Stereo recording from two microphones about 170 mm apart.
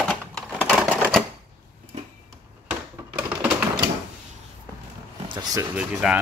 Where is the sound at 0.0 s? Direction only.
5° left (ahead or behind).